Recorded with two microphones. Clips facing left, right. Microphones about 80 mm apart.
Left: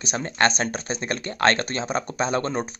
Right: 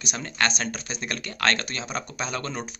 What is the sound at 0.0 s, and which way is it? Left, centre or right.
Speech, left.